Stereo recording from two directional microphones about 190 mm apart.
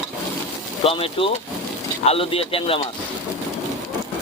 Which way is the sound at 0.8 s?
30° left (ahead or behind).